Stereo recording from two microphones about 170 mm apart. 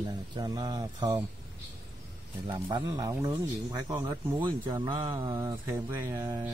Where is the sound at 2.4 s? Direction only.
20° right (ahead or behind).